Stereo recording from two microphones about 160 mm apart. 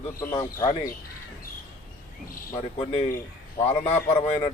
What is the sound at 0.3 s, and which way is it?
Speech, 30° left (ahead or behind).